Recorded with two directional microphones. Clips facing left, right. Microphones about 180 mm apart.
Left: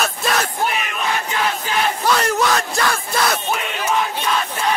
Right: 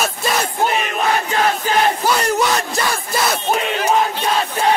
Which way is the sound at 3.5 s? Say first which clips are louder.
Right 4 dB; 35° right (ahead or behind).